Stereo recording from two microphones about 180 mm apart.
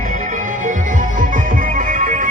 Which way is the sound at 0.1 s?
45° right (ahead or behind).